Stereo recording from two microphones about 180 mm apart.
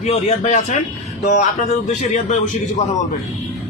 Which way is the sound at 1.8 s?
40° left (ahead or behind).